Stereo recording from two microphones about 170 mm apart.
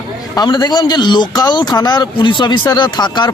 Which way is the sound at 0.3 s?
25° left (ahead or behind).